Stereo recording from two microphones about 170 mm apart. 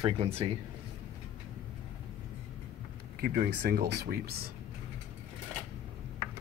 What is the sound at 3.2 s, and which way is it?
Speech, 65° right (ahead or behind).